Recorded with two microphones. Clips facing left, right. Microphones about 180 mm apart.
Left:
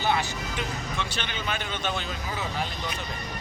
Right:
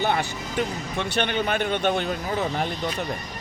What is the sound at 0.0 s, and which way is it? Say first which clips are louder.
Speech: right 2 dB; 55° right (ahead or behind).